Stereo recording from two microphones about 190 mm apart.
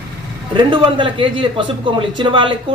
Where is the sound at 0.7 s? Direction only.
25° right (ahead or behind).